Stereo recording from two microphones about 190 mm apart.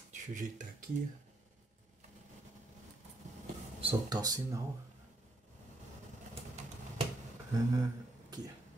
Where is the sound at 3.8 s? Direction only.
20° right (ahead or behind).